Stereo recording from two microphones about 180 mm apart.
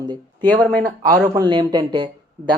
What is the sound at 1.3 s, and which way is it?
Speech, 25° right (ahead or behind).